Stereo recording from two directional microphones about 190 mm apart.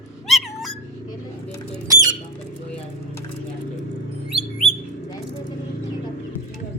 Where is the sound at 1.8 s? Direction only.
20° right (ahead or behind).